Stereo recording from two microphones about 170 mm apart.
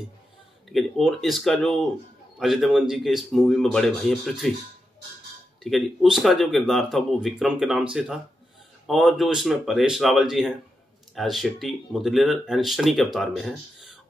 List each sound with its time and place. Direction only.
0.7 s speech: centre (ahead or behind)
5.6 s speech: centre (ahead or behind)